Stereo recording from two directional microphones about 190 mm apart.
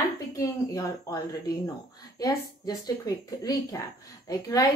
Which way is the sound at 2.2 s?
20° left (ahead or behind).